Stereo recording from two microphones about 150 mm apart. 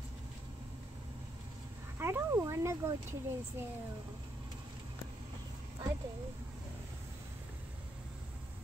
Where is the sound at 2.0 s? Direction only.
15° right (ahead or behind).